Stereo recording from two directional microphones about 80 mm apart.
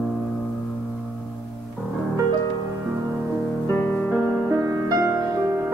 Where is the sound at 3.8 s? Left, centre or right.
Centre.